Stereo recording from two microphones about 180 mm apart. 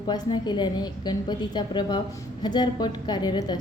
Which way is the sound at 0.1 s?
25° left (ahead or behind).